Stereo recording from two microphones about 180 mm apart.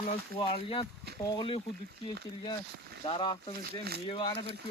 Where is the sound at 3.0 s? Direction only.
25° left (ahead or behind).